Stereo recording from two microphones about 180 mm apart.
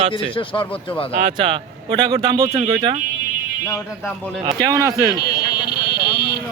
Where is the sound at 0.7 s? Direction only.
10° left (ahead or behind).